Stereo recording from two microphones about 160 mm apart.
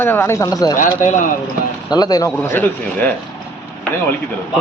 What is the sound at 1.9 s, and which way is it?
Speech, 25° left (ahead or behind).